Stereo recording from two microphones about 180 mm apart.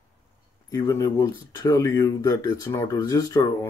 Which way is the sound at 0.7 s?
20° left (ahead or behind).